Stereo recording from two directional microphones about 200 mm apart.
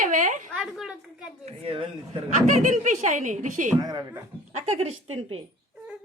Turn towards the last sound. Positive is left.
turn(degrees=-30)  # may be behind; listen again after turning